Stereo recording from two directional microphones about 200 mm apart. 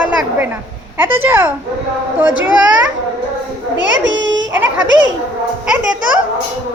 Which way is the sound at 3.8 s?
70° right (ahead or behind).